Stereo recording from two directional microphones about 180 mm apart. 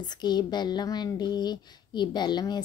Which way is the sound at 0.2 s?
25° left (ahead or behind).